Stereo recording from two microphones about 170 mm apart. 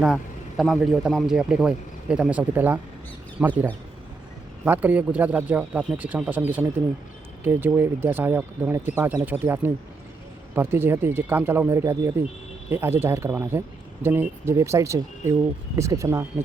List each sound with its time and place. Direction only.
0.0 s a man's voice: centre (ahead or behind)
4.6 s speech: 10° right (ahead or behind)